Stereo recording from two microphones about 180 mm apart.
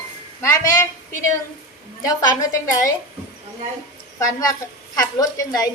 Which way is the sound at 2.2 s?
20° left (ahead or behind).